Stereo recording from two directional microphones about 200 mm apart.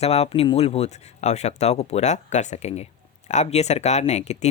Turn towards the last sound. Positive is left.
turn(degrees=35)  # may be behind; listen again after turning